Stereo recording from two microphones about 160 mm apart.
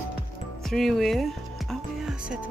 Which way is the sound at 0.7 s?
Centre (ahead or behind).